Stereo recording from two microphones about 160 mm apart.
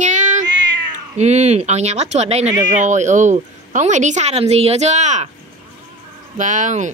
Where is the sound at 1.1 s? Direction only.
45° right (ahead or behind).